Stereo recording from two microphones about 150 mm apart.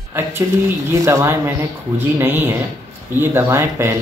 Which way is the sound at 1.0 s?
20° right (ahead or behind).